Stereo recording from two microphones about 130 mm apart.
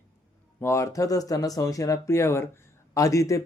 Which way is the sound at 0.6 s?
20° left (ahead or behind).